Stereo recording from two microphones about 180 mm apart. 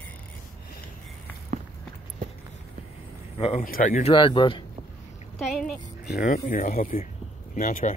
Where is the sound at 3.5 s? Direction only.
50° left (ahead or behind).